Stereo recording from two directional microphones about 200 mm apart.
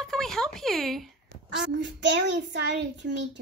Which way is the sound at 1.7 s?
60° right (ahead or behind).